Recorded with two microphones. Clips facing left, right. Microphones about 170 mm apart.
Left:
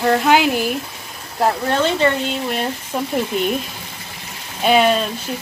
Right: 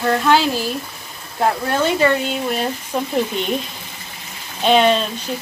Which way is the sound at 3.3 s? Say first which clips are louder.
Left 4 dB; 5° left (ahead or behind).